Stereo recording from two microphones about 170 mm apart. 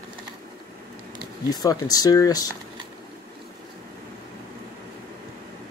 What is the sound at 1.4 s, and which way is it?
Speech, 20° left (ahead or behind).